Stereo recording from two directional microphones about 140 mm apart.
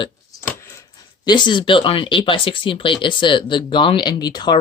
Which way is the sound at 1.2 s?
35° left (ahead or behind).